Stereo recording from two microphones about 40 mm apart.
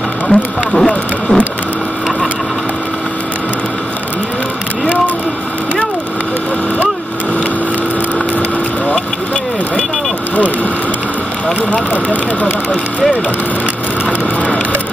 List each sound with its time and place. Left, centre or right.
0.3 s speech: left
0.7 s speech: centre
11.9 s vehicle: left